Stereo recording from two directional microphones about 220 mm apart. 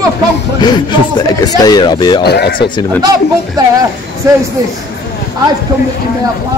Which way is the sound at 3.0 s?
15° right (ahead or behind).